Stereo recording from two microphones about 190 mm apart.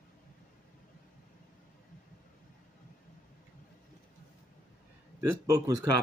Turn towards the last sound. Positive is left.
turn(degrees=-20)  # may be behind; listen again after turning